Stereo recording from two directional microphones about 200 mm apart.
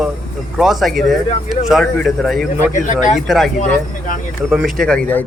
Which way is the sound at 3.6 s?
40° left (ahead or behind).